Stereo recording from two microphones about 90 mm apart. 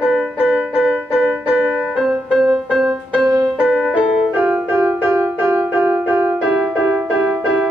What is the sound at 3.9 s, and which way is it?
Music, 15° right (ahead or behind).